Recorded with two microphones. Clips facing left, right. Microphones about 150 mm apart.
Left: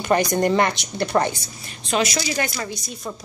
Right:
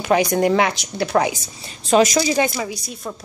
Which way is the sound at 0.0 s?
5° right (ahead or behind).